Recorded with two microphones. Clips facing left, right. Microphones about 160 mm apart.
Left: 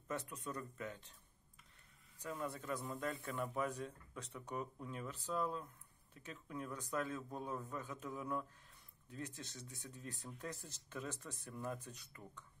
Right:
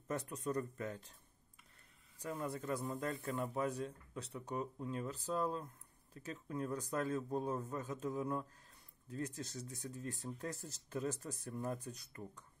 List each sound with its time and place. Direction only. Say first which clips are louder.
0.1 s speech: right 5 dB; 40° right (ahead or behind)
2.1 s speech: right 2 dB; 35° right (ahead or behind)